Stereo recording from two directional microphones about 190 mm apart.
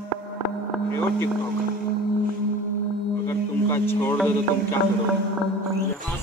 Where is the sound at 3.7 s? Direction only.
10° left (ahead or behind).